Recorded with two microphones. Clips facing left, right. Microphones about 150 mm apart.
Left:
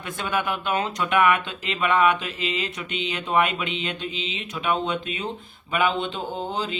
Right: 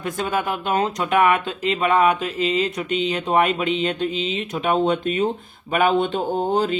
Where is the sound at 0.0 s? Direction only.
40° right (ahead or behind).